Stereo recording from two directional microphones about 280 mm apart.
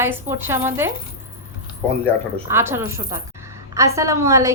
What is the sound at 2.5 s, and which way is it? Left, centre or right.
A woman's voice, centre.